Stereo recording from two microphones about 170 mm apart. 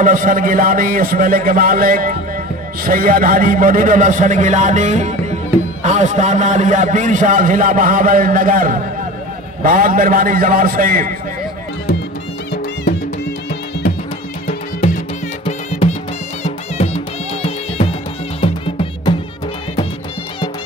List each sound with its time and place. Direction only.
0.0 s a man's voice: 50° right (ahead or behind)
15.4 s music: 35° left (ahead or behind)